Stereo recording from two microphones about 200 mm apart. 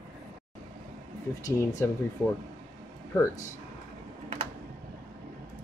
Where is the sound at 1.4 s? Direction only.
15° left (ahead or behind).